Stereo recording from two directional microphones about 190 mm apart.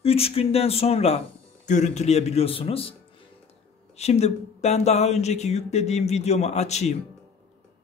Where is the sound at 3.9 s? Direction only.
35° left (ahead or behind).